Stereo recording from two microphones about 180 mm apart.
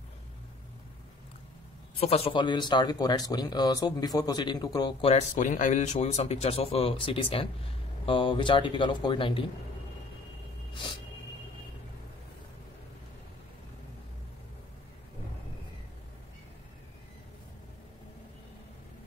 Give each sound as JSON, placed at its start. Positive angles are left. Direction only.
{"t": 2.0, "sound": "speech", "side_deg": 35}
{"t": 5.0, "sound": "speech", "side_deg": 40}